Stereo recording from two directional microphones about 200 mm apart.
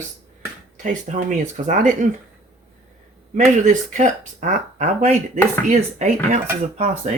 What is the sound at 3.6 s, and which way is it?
Speech, 40° right (ahead or behind).